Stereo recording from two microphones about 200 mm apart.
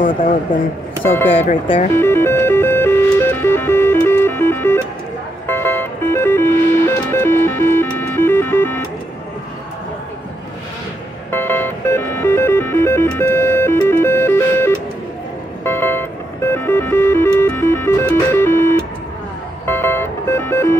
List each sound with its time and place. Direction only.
1.0 s speech: 10° left (ahead or behind)
1.3 s speech: 30° left (ahead or behind)
2.0 s music: 10° left (ahead or behind)
11.3 s music: 10° left (ahead or behind)